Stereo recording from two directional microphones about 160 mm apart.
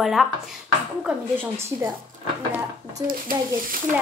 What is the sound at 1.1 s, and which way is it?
Speech, 15° right (ahead or behind).